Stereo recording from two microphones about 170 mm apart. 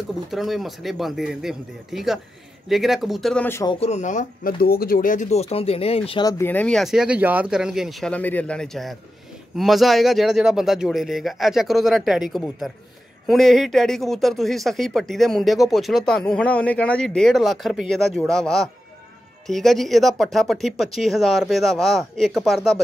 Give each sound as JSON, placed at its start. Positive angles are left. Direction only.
{"t": 0.3, "sound": "speech", "side_deg": 0}
{"t": 3.8, "sound": "speech", "side_deg": 45}
{"t": 6.2, "sound": "speech", "side_deg": 15}
{"t": 8.1, "sound": "a man's voice", "side_deg": 10}